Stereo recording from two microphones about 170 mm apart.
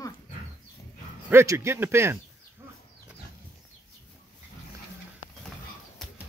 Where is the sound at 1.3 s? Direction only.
15° right (ahead or behind).